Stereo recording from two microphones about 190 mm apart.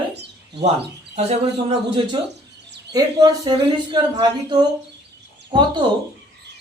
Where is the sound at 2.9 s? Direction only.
20° right (ahead or behind).